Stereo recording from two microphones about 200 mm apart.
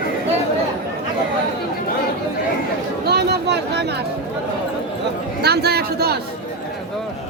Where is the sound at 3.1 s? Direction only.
55° right (ahead or behind).